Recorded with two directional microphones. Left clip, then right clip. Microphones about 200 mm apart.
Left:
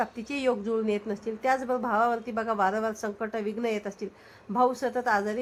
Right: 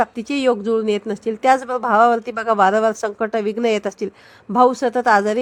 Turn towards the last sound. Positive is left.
turn(degrees=-40)  # may be behind; listen again after turning